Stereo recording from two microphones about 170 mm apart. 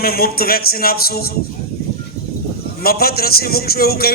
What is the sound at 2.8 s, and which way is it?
A man's voice, 65° left (ahead or behind).